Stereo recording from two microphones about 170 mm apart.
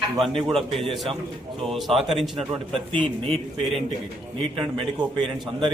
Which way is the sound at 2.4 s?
35° right (ahead or behind).